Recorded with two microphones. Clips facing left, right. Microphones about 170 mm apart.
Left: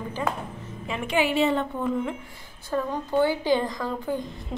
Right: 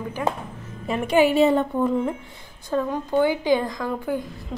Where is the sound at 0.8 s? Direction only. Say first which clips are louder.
Right 6 dB; 45° right (ahead or behind).